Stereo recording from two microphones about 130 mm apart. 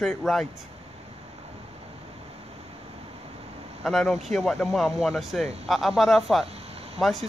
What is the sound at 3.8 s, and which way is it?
Speech, centre (ahead or behind).